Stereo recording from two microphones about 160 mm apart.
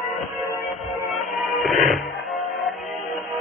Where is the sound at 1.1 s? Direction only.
Centre (ahead or behind).